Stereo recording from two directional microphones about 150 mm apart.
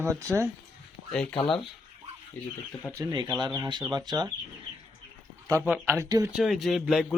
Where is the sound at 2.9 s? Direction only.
20° right (ahead or behind).